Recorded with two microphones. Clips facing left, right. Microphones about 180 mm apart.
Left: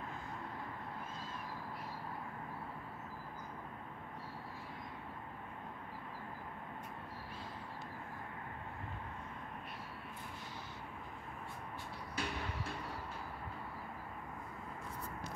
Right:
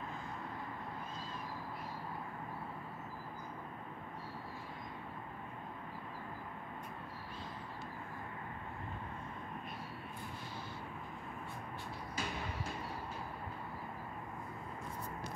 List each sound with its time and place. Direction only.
12.2 s train: 65° left (ahead or behind)